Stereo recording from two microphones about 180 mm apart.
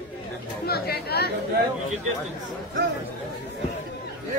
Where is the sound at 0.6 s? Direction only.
60° left (ahead or behind).